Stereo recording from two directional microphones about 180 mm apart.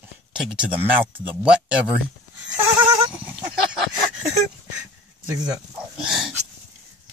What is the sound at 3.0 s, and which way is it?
Horse, 10° right (ahead or behind).